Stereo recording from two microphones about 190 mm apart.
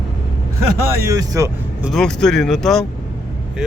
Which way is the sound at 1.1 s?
15° right (ahead or behind).